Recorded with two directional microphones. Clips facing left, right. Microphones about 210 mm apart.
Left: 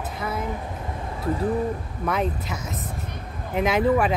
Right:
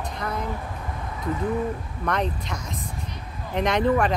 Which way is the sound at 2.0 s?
5° left (ahead or behind).